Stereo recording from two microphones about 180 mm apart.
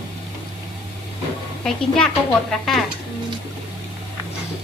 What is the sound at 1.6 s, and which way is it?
Speech, 5° left (ahead or behind).